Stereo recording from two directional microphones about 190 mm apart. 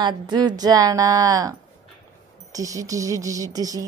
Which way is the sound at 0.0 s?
20° right (ahead or behind).